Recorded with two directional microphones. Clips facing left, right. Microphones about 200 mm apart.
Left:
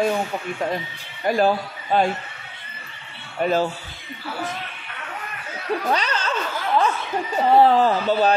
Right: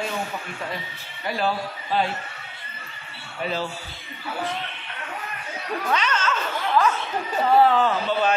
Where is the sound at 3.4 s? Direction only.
50° left (ahead or behind).